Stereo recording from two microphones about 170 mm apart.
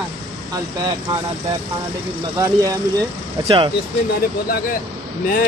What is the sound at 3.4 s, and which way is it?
Speech, 30° right (ahead or behind).